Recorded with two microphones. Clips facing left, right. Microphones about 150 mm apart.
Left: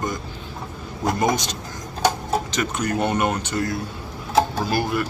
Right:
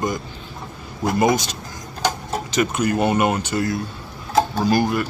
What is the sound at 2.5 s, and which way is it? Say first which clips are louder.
Speech: right 4 dB; 10° right (ahead or behind).